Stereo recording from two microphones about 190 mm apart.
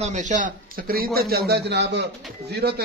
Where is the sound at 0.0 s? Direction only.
40° right (ahead or behind); by 2.0 s 65° right (ahead or behind).